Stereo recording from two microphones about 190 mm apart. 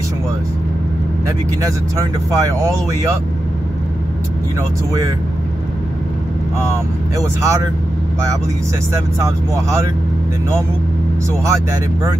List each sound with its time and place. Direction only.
1.6 s speech: 15° right (ahead or behind)
7.4 s speech: 15° right (ahead or behind)